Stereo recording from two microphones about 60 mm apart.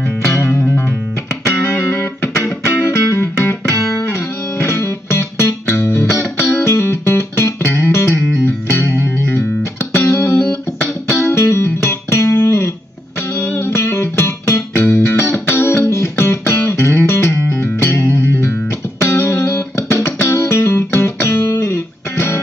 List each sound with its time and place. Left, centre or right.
0.2 s music: left
13.4 s music: left